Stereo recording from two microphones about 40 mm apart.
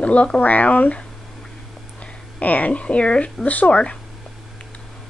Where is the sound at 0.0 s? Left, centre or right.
Left.